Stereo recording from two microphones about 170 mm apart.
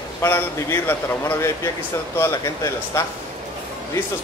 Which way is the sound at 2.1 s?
15° left (ahead or behind).